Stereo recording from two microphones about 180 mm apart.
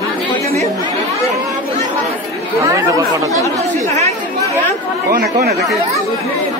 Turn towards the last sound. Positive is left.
turn(degrees=0)  # may be behind; listen again after turning